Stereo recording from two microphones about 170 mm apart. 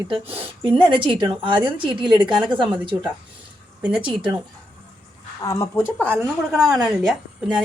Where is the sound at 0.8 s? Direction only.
30° right (ahead or behind).